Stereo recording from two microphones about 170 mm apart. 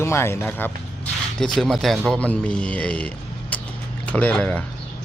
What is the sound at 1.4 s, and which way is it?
Speech, centre (ahead or behind).